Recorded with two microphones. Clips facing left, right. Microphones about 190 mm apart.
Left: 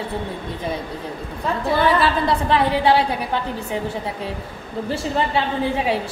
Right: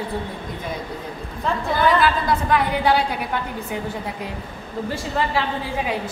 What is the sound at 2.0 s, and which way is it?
A woman's voice, 30° left (ahead or behind).